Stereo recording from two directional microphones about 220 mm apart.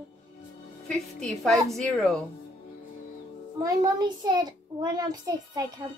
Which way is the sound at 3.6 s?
15° right (ahead or behind).